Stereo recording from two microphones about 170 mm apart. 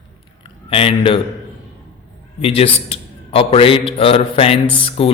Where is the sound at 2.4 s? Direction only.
35° left (ahead or behind).